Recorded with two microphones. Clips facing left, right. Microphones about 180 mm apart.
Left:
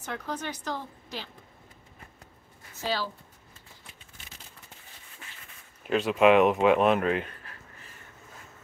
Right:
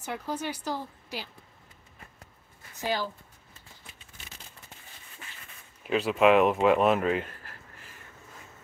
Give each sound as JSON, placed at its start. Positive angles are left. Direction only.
{"t": 0.0, "sound": "speech", "side_deg": -10}
{"t": 2.7, "sound": "speech", "side_deg": -15}
{"t": 5.9, "sound": "speech", "side_deg": 0}